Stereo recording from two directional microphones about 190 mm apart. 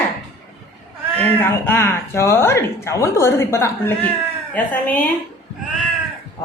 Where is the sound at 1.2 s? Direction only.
10° left (ahead or behind).